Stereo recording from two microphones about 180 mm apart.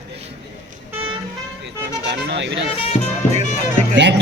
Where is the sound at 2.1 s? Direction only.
75° right (ahead or behind).